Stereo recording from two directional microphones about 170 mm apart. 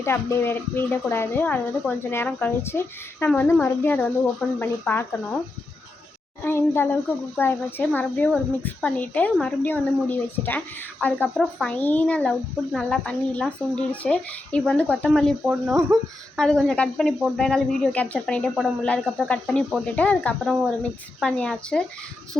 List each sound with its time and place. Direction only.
0.0 s a woman's voice: 15° left (ahead or behind)
6.4 s a woman's voice: 15° left (ahead or behind)
15.9 s a woman's voice: 15° right (ahead or behind)
16.4 s a woman's voice: 5° left (ahead or behind)